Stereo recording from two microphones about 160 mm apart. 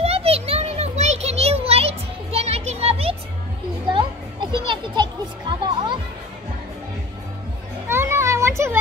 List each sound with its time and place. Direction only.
0.0 s children playing: 40° right (ahead or behind)
4.5 s music: 30° right (ahead or behind)
7.9 s a sound: 15° right (ahead or behind)